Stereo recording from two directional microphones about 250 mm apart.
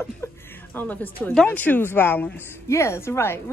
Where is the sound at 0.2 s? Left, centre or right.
Centre.